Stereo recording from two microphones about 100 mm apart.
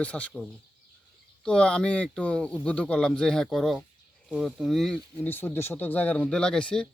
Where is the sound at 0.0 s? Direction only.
15° left (ahead or behind).